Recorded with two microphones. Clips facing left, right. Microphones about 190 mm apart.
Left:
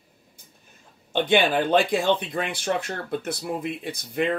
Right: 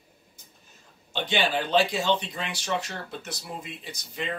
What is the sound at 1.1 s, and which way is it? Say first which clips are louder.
Speech: left 6 dB; 55° left (ahead or behind).